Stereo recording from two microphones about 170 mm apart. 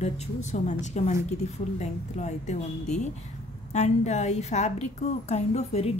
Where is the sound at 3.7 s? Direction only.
40° left (ahead or behind).